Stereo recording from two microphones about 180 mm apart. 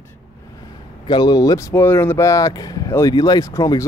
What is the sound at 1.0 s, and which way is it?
Speech, 25° left (ahead or behind).